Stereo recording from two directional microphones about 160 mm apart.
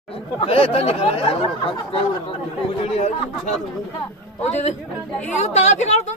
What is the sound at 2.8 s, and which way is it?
Speech, 40° left (ahead or behind).